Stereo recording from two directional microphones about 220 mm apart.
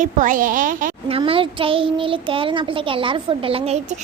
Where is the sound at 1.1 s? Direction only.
25° right (ahead or behind).